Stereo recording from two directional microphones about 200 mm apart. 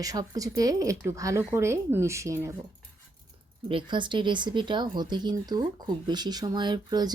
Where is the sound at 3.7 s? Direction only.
25° right (ahead or behind).